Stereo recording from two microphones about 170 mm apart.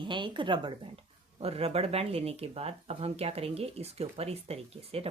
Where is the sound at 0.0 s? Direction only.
30° right (ahead or behind).